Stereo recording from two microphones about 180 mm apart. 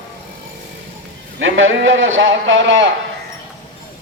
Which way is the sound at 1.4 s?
90° right.